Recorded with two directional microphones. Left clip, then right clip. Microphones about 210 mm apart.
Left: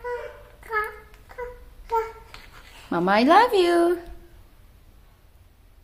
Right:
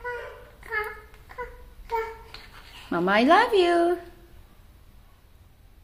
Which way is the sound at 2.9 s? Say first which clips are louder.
Left 1 dB; 5° left (ahead or behind).